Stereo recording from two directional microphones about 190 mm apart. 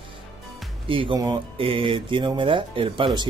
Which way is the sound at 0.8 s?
25° right (ahead or behind).